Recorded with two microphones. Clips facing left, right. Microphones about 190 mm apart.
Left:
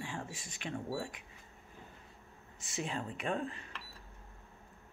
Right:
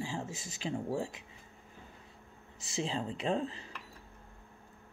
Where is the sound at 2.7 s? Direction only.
25° right (ahead or behind).